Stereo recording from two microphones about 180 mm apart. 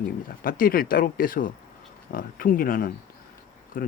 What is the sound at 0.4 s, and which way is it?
Speech, 50° left (ahead or behind).